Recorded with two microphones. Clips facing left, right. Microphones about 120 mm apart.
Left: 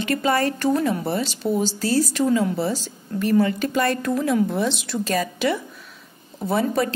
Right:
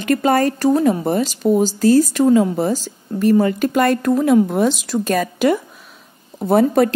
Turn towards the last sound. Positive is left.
turn(degrees=-55)  # may be behind; listen again after turning